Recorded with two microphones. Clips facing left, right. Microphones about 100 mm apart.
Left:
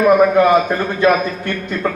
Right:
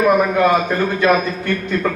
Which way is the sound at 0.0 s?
20° left (ahead or behind).